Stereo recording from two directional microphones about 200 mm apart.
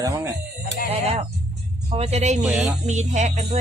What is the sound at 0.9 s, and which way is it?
Music, 30° right (ahead or behind).